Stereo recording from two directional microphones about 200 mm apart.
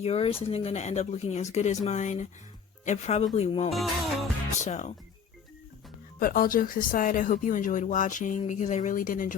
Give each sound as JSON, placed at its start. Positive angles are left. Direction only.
{"t": 0.0, "sound": "speech", "side_deg": 30}
{"t": 3.7, "sound": "music", "side_deg": 0}
{"t": 4.5, "sound": "speech", "side_deg": 35}
{"t": 6.1, "sound": "speech", "side_deg": 45}